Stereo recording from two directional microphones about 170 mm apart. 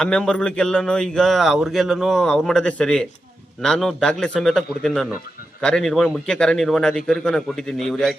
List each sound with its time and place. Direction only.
0.0 s speech: 5° left (ahead or behind)